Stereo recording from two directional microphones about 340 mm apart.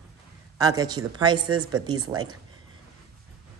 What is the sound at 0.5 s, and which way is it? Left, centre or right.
A man's voice, centre.